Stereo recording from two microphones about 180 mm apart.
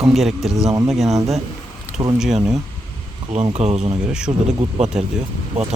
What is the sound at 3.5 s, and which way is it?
Speech, 35° right (ahead or behind).